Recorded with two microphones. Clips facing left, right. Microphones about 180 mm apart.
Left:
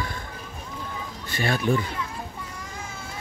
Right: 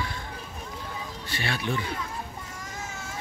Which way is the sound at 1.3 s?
45° left (ahead or behind).